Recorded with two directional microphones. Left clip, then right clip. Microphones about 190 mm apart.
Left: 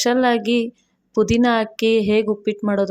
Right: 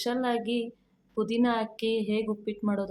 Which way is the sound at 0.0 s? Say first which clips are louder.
Left 12 dB; 40° left (ahead or behind).